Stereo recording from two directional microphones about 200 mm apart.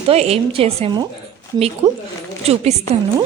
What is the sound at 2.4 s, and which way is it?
Speech, 30° right (ahead or behind).